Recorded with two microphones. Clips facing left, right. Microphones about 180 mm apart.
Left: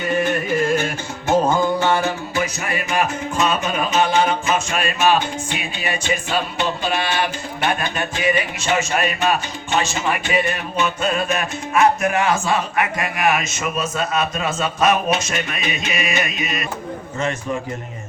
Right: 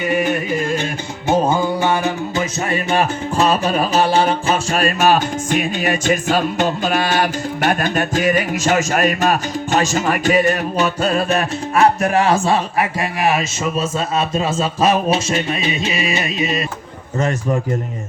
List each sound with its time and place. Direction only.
0.1 s carnatic music: 10° right (ahead or behind)
1.3 s music: 10° right (ahead or behind)
2.6 s music: 30° right (ahead or behind)